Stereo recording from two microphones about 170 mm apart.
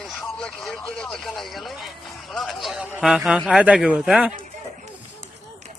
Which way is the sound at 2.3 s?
Centre (ahead or behind).